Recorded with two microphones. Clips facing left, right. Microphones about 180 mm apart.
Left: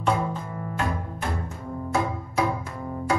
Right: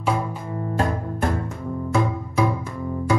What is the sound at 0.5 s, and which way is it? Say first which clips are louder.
Music: right 6 dB; 35° right (ahead or behind).